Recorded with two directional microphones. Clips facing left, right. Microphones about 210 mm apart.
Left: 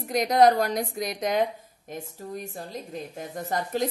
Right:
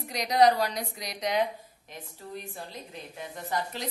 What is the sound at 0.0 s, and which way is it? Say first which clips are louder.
Speech: left 3 dB; 50° left (ahead or behind).